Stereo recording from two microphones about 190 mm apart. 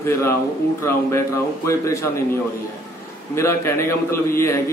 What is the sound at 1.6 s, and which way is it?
Speech, 15° left (ahead or behind).